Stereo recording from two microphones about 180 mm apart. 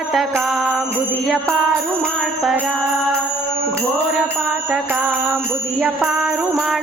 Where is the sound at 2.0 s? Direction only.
Centre (ahead or behind).